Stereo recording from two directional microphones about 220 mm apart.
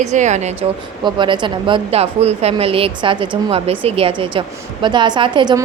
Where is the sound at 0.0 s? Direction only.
30° right (ahead or behind).